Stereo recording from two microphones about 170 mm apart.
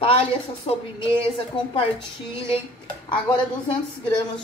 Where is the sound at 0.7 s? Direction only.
35° left (ahead or behind).